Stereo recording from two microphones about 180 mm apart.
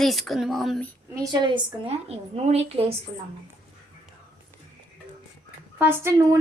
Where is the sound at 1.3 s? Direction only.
25° right (ahead or behind).